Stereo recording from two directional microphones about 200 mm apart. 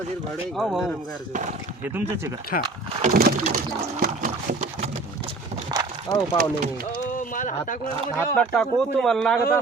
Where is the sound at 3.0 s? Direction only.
45° right (ahead or behind).